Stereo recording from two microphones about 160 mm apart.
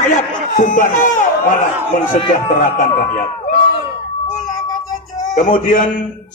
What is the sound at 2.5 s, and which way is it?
Speech, 55° left (ahead or behind).